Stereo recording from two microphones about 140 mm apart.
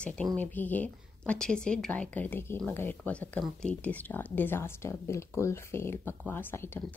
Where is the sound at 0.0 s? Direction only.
5° left (ahead or behind).